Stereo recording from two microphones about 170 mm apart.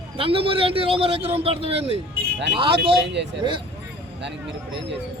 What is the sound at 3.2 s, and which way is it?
Speech, 90° right.